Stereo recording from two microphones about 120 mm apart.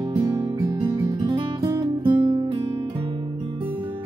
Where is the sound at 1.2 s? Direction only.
40° right (ahead or behind).